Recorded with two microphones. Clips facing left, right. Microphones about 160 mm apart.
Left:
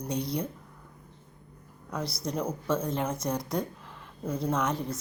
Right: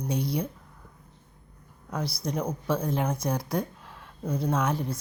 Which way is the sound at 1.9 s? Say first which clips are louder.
Right 2 dB; centre (ahead or behind).